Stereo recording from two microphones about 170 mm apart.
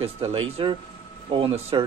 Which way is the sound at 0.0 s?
35° right (ahead or behind).